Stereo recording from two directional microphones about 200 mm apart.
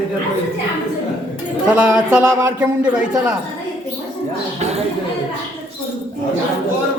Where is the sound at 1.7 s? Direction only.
5° right (ahead or behind).